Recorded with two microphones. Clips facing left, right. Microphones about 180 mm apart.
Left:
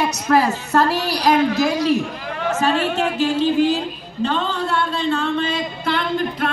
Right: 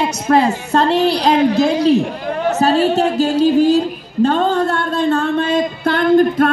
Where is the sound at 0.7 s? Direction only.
25° right (ahead or behind).